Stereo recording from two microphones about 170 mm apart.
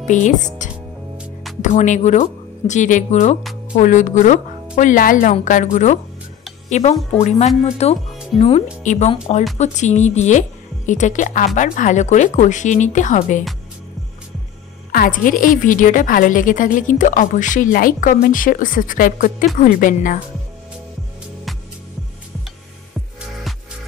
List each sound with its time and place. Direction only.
0.0 s speech: 45° left (ahead or behind)
1.6 s a woman's voice: 45° left (ahead or behind)
14.9 s a woman's voice: 55° left (ahead or behind)